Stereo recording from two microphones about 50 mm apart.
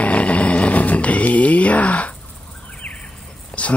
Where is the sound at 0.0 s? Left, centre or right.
Left.